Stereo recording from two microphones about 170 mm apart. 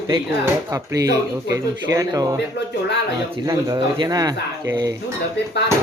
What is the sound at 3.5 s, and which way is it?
Speech, 25° right (ahead or behind).